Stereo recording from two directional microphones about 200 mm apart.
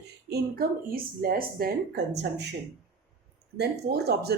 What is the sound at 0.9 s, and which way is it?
Speech, 45° right (ahead or behind).